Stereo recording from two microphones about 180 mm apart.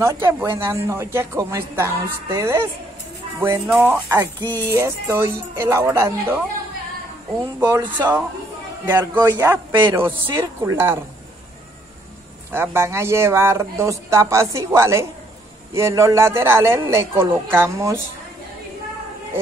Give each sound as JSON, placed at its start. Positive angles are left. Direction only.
{"t": 0.0, "sound": "speech", "side_deg": -15}
{"t": 3.6, "sound": "speech", "side_deg": -5}
{"t": 7.6, "sound": "speech", "side_deg": -20}
{"t": 9.7, "sound": "a man's voice", "side_deg": -25}
{"t": 10.3, "sound": "speech", "side_deg": -15}
{"t": 12.5, "sound": "speech", "side_deg": -15}